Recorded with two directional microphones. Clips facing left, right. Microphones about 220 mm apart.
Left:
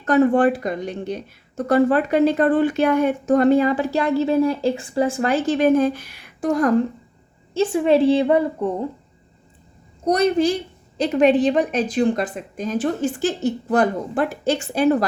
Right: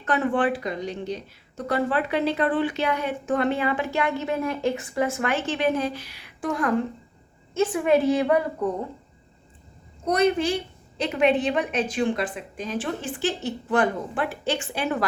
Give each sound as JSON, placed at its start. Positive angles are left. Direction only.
{"t": 0.0, "sound": "a woman's voice", "side_deg": 40}
{"t": 7.5, "sound": "a woman's voice", "side_deg": 30}
{"t": 10.1, "sound": "a woman's voice", "side_deg": 40}